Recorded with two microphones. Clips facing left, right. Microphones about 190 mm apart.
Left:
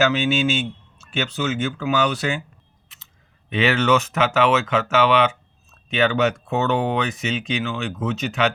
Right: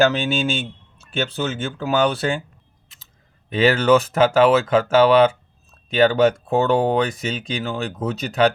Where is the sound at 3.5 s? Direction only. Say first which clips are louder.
Right 3 dB; 35° right (ahead or behind).